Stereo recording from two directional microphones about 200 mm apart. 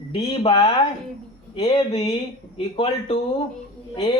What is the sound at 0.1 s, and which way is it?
A man's voice, 25° left (ahead or behind).